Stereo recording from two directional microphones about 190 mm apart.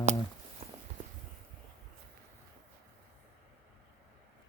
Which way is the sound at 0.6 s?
35° right (ahead or behind).